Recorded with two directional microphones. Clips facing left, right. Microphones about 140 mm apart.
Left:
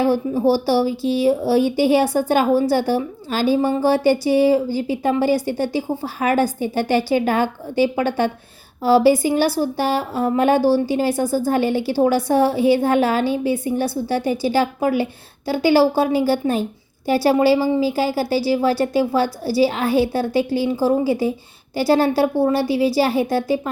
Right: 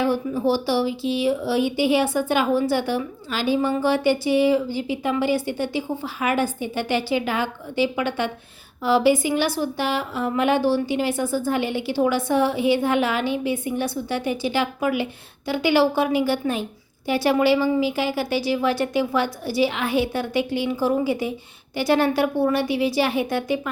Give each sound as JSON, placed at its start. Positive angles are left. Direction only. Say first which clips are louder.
{"t": 0.0, "sound": "speech", "louder": "left 4 dB", "side_deg": 40}